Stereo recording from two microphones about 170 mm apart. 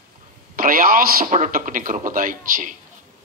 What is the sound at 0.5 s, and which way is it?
A man's voice, 55° right (ahead or behind).